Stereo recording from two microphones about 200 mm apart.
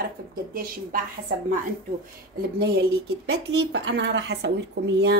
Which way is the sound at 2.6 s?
50° right (ahead or behind).